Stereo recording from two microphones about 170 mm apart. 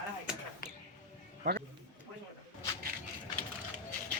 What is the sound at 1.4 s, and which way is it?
Speech, 65° right (ahead or behind).